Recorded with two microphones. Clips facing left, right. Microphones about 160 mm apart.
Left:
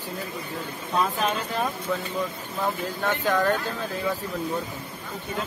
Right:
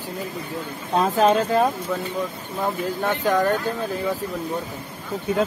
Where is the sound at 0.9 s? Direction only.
40° right (ahead or behind).